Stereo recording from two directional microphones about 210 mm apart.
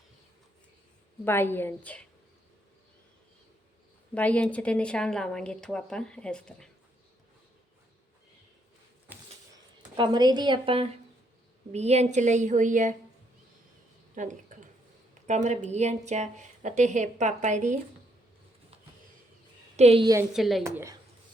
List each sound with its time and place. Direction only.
1.2 s a woman's voice: 10° left (ahead or behind)
4.1 s a woman's voice: 5° left (ahead or behind)
9.1 s a sound: 10° right (ahead or behind)
9.9 s a woman's voice: 20° right (ahead or behind)
14.2 s a woman's voice: 35° right (ahead or behind)
19.7 s a woman's voice: 30° right (ahead or behind)
20.3 s a woman's voice: centre (ahead or behind)
20.7 s speech: 15° right (ahead or behind)